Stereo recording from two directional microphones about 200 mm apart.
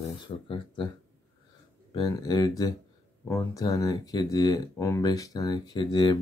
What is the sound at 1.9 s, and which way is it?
Speech, 20° left (ahead or behind).